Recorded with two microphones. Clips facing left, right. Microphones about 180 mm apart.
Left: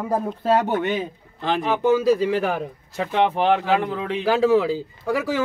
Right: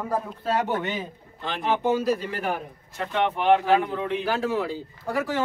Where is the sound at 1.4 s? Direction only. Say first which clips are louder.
Left 4 dB; 90° left.